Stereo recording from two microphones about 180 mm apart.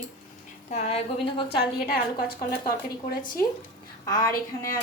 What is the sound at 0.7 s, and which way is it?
Speech, 35° left (ahead or behind).